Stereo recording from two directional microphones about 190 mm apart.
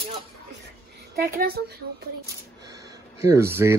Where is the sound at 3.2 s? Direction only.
15° right (ahead or behind).